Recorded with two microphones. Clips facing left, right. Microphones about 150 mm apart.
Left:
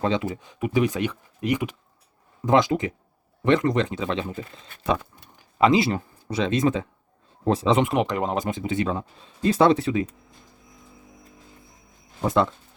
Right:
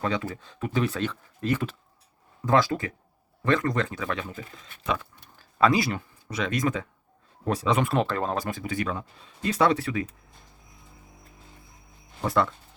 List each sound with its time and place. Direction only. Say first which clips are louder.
0.0 s speech: left 4 dB; 20° left (ahead or behind)
5.4 s a sound: left 3 dB; 20° left (ahead or behind)
5.9 s speech: left 5 dB; 35° left (ahead or behind)
12.2 s speech: left 3 dB; 20° left (ahead or behind)